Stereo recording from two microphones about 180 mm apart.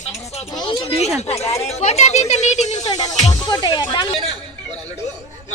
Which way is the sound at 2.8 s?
20° left (ahead or behind).